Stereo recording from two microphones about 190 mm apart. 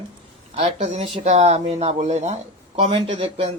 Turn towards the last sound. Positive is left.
turn(degrees=-30)  # may be behind; listen again after turning